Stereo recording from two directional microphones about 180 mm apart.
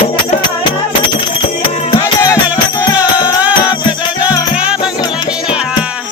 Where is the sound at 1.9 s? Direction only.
25° left (ahead or behind).